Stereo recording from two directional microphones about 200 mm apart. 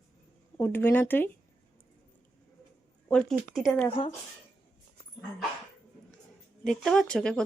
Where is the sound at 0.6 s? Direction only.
10° left (ahead or behind).